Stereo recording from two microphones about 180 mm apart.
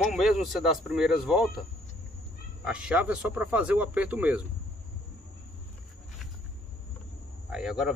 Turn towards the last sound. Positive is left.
turn(degrees=-5)  # may be behind; listen again after turning